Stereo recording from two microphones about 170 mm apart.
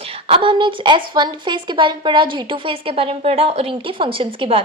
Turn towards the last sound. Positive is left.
turn(degrees=-30)  # may be behind; listen again after turning